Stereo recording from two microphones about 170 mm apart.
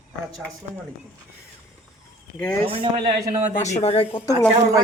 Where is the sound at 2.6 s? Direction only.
30° right (ahead or behind).